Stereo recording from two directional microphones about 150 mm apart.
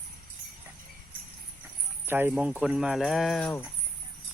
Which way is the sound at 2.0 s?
15° right (ahead or behind).